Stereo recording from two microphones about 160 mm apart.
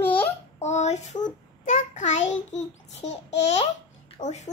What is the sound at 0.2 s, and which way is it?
Babbling, 45° left (ahead or behind).